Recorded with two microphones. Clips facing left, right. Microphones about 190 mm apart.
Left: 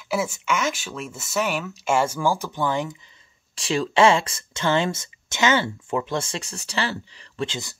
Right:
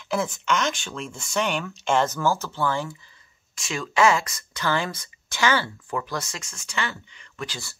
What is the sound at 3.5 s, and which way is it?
Speech, 35° left (ahead or behind).